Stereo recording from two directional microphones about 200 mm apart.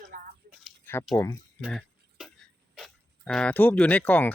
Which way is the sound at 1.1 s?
15° left (ahead or behind).